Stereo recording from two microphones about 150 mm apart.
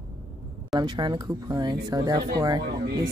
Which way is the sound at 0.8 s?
30° right (ahead or behind).